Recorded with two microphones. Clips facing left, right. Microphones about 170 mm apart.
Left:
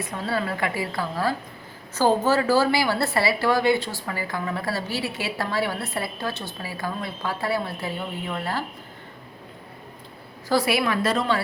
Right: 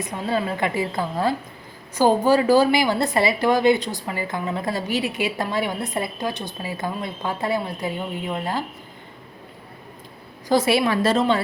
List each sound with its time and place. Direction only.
0.0 s a woman's voice: 20° right (ahead or behind)
10.5 s a woman's voice: 25° right (ahead or behind)